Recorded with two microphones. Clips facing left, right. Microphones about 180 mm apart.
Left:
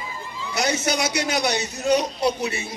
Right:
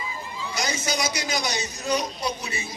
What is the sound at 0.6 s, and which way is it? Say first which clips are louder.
Speech: left 5 dB; 65° left (ahead or behind).